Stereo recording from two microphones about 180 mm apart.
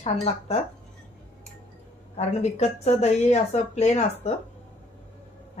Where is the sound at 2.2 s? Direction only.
35° left (ahead or behind).